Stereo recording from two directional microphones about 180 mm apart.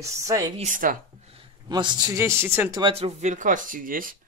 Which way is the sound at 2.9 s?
35° right (ahead or behind).